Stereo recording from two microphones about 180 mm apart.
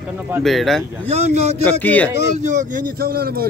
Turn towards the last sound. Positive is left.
turn(degrees=-55)  # may be behind; listen again after turning